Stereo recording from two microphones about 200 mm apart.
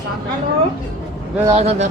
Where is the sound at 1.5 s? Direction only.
30° right (ahead or behind).